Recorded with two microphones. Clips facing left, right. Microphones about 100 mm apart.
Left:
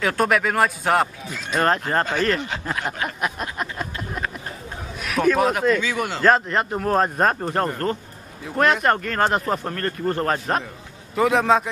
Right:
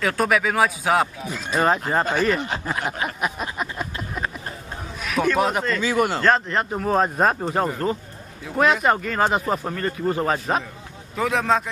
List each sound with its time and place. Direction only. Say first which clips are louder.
0.0 s speech: left 1 dB; centre (ahead or behind)
2.8 s a sound: even; centre (ahead or behind)
5.0 s speech: left 2 dB; centre (ahead or behind)
5.8 s a man's voice: right 4 dB; 40° right (ahead or behind)
6.2 s speech: left 2 dB; centre (ahead or behind)